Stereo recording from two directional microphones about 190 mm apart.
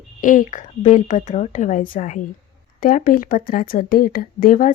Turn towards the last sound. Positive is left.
turn(degrees=45)  # may be behind; listen again after turning